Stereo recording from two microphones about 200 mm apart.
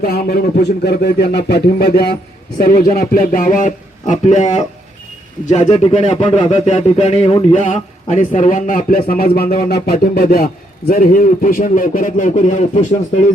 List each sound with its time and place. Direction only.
0.0 s speech: 50° left (ahead or behind)